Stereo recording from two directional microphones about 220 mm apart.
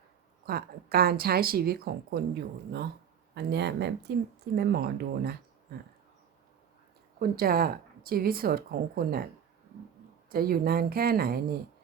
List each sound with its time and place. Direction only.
0.4 s speech: 45° right (ahead or behind)
7.2 s speech: 40° right (ahead or behind)
10.2 s speech: 40° right (ahead or behind)